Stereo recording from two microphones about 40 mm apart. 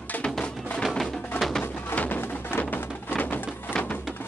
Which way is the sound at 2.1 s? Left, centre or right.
Left.